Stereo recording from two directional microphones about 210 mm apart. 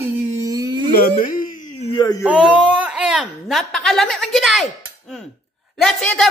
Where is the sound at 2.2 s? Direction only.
5° right (ahead or behind).